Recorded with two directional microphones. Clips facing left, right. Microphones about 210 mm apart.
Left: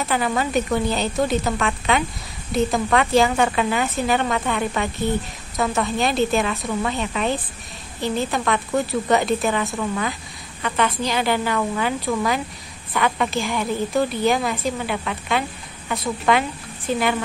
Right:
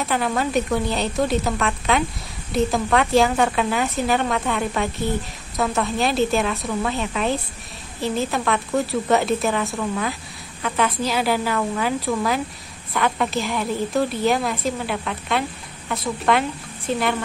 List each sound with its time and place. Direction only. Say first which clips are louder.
0.0 s speech: even; centre (ahead or behind)